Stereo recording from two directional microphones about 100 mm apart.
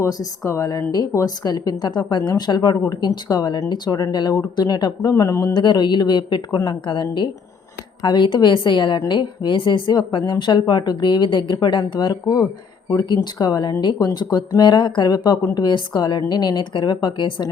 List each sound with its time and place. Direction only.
0.0 s speech: 35° left (ahead or behind)
5.5 s speech: 50° left (ahead or behind)